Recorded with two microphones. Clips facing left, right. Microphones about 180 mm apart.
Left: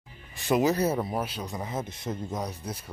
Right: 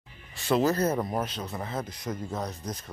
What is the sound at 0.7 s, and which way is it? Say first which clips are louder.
Speech: even; 5° left (ahead or behind).